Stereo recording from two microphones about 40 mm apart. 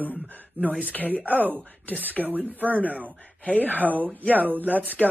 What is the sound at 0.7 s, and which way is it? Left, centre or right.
Speech, right.